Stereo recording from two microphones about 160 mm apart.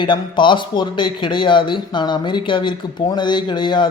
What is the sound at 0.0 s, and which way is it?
Speech, 30° left (ahead or behind).